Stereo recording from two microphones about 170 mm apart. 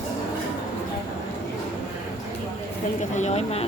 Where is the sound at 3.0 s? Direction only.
45° left (ahead or behind).